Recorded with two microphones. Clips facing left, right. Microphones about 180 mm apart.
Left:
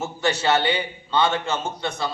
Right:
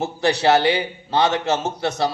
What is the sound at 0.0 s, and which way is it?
A man's voice, 70° right (ahead or behind).